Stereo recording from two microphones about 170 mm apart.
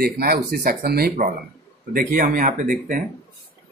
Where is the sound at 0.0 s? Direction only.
65° right (ahead or behind).